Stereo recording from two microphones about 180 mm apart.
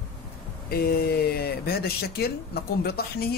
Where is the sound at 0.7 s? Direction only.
60° left (ahead or behind).